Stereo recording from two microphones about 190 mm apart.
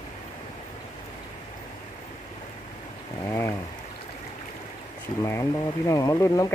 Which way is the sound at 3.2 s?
15° left (ahead or behind).